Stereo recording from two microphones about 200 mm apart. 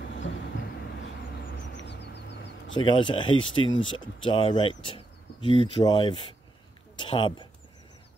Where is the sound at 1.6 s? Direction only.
65° left (ahead or behind).